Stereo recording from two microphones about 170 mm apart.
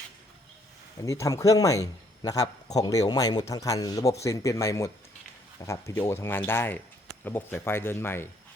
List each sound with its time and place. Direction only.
1.0 s a man's voice: 20° left (ahead or behind)